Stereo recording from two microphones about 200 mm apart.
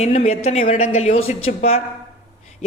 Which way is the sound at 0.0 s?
35° left (ahead or behind).